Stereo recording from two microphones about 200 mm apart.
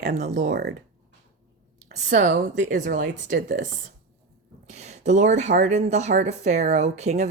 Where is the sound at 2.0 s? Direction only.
35° right (ahead or behind).